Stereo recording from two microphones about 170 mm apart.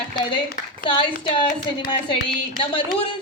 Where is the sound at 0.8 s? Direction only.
30° left (ahead or behind).